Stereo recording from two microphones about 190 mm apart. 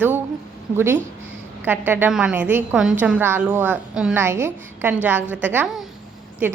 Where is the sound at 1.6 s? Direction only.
10° right (ahead or behind).